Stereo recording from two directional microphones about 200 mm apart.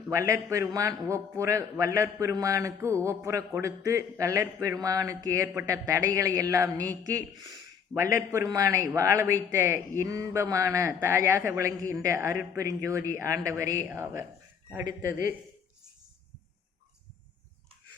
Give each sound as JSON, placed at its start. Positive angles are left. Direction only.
{"t": 0.1, "sound": "speech", "side_deg": -15}